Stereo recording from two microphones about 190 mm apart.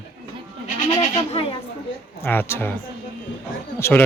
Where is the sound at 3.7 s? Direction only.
15° left (ahead or behind).